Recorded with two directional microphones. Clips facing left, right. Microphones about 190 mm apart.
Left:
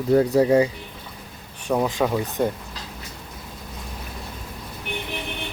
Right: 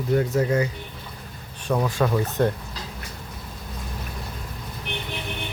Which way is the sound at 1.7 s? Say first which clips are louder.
Left 1 dB; 20° left (ahead or behind).